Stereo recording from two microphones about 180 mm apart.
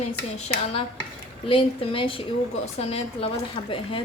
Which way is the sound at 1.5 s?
30° left (ahead or behind).